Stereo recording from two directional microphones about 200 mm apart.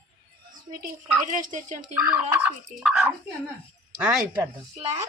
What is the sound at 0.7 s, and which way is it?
Speech, 45° right (ahead or behind).